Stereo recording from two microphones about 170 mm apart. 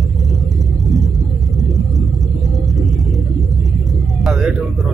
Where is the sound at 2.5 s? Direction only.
Centre (ahead or behind).